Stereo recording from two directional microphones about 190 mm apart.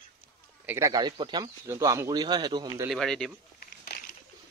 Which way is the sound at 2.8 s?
Centre (ahead or behind).